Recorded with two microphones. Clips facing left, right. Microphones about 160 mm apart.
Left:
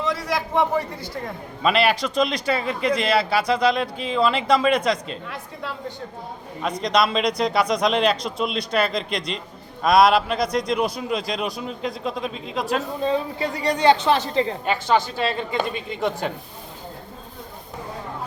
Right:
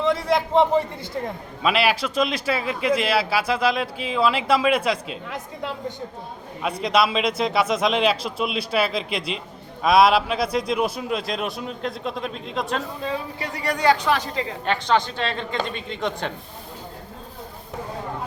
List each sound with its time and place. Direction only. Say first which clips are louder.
0.0 s a man's voice: right 4 dB; 25° right (ahead or behind)
1.6 s a man's voice: left 1 dB; centre (ahead or behind)
6.6 s a man's voice: even; 5° right (ahead or behind)
13.0 s a woman's voice: left 6 dB; 25° left (ahead or behind)
14.6 s a man's voice: left 1 dB; 5° left (ahead or behind)